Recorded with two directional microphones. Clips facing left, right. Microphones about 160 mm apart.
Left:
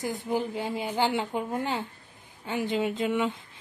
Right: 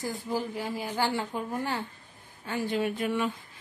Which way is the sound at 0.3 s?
25° left (ahead or behind).